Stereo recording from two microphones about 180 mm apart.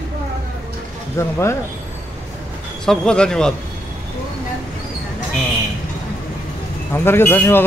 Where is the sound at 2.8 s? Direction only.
5° left (ahead or behind).